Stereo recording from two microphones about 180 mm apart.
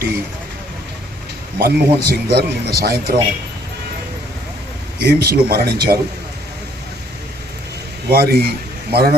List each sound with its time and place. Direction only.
1.5 s speech: 60° right (ahead or behind)
4.9 s speech: 60° right (ahead or behind)
8.1 s a man's voice: 60° right (ahead or behind)